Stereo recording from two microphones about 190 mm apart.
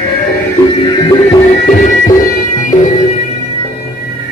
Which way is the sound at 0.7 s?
25° left (ahead or behind).